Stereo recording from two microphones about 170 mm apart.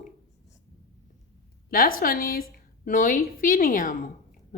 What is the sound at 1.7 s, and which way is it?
A woman's voice, 60° left (ahead or behind).